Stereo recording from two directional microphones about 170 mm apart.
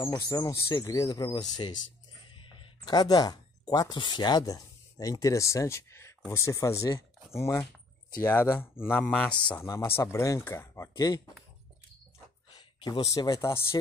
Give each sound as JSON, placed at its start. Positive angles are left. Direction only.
{"t": 0.0, "sound": "speech", "side_deg": 20}
{"t": 9.7, "sound": "speech", "side_deg": 15}
{"t": 12.4, "sound": "speech", "side_deg": 30}